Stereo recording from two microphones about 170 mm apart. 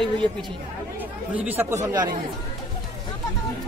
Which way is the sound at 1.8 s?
25° right (ahead or behind).